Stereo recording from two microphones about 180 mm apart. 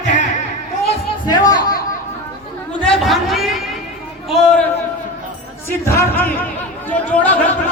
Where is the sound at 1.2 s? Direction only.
20° left (ahead or behind).